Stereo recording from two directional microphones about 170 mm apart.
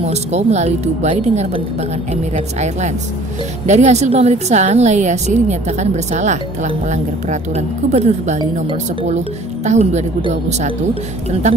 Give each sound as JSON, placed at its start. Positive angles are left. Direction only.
{"t": 0.0, "sound": "a woman's voice", "side_deg": -40}
{"t": 9.7, "sound": "a woman's voice", "side_deg": -40}